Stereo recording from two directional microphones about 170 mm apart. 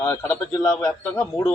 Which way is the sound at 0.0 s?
15° left (ahead or behind).